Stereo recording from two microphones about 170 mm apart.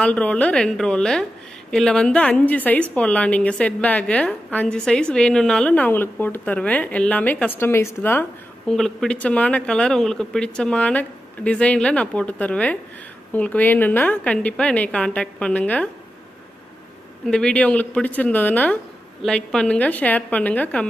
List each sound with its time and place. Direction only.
0.0 s a woman's voice: 5° left (ahead or behind)
17.3 s a woman's voice: 5° left (ahead or behind)